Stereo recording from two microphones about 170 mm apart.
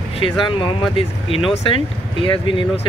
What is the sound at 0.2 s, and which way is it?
Speech, 30° left (ahead or behind).